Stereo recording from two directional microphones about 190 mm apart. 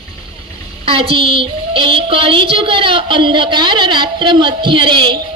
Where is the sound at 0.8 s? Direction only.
30° right (ahead or behind).